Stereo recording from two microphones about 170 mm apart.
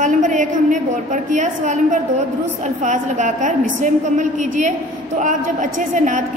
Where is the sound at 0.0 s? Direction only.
45° right (ahead or behind).